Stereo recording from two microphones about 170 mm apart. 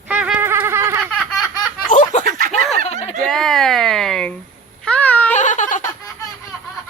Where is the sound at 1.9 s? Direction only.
50° left (ahead or behind).